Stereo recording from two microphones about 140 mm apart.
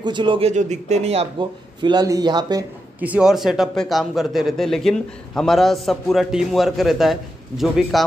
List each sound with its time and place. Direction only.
0.0 s speech: 35° right (ahead or behind)
0.5 s speech: 55° right (ahead or behind)
1.4 s speech: 35° right (ahead or behind)
3.0 s a man's voice: 10° right (ahead or behind)